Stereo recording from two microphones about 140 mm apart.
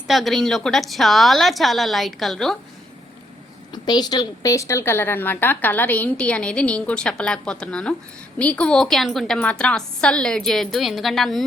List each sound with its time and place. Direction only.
0.1 s a woman's voice: centre (ahead or behind)
3.7 s a woman's voice: 30° left (ahead or behind); by 11.4 s centre (ahead or behind)